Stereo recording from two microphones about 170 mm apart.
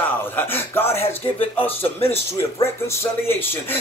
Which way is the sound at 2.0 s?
35° left (ahead or behind).